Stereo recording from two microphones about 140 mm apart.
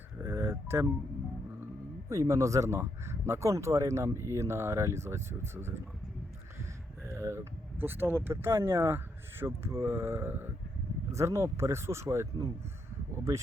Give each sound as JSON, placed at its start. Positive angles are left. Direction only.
{"t": 0.2, "sound": "music", "side_deg": -20}
{"t": 2.0, "sound": "speech", "side_deg": -25}
{"t": 7.1, "sound": "speech", "side_deg": -20}